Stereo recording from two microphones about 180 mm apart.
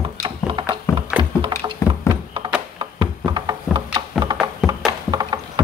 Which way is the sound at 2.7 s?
25° right (ahead or behind).